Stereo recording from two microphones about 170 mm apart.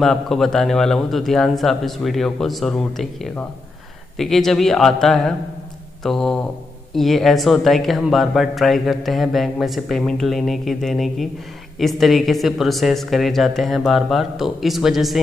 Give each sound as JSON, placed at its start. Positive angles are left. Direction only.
{"t": 0.0, "sound": "speech", "side_deg": 0}